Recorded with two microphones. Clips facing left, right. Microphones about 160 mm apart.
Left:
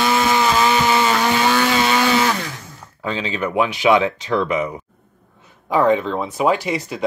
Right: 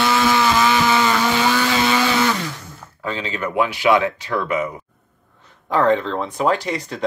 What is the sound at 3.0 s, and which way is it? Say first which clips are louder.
Speech: left 2 dB; 20° left (ahead or behind).